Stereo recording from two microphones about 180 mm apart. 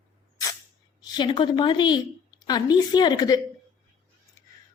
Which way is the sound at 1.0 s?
25° left (ahead or behind).